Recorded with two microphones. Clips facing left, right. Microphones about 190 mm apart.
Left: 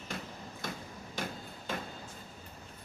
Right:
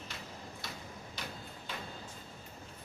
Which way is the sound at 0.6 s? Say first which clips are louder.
Left 4 dB; 50° left (ahead or behind).